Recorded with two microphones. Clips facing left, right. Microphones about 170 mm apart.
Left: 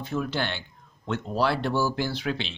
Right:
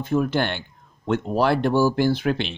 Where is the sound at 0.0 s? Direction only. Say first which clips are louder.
Right 7 dB; 50° right (ahead or behind).